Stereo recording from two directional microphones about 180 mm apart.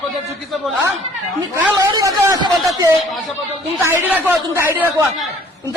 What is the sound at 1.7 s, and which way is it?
Speech, 20° right (ahead or behind).